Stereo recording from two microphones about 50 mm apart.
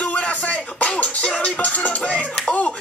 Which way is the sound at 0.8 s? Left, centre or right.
Left.